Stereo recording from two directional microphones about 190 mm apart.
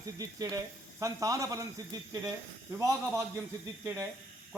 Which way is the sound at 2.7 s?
15° right (ahead or behind).